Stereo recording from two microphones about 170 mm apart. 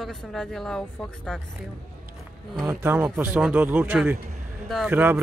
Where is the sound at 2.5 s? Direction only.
15° right (ahead or behind).